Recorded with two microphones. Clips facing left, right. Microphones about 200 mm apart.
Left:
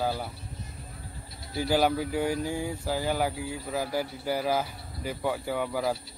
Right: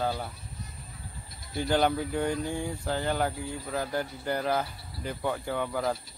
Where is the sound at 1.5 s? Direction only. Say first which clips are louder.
Left 1 dB; 5° left (ahead or behind).